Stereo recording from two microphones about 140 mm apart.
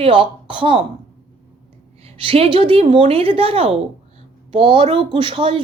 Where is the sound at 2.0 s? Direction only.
45° right (ahead or behind).